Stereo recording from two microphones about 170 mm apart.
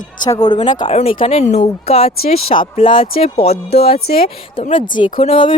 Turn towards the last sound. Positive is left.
turn(degrees=35)  # may be behind; listen again after turning